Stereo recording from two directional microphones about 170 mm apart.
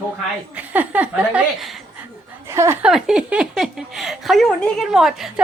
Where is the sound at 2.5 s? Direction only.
15° right (ahead or behind).